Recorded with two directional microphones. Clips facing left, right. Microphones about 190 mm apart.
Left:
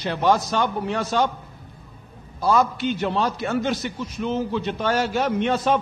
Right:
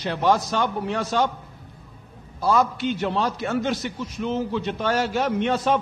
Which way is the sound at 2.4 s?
15° left (ahead or behind).